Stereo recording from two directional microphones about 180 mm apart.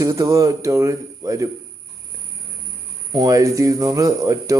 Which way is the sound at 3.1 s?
20° right (ahead or behind).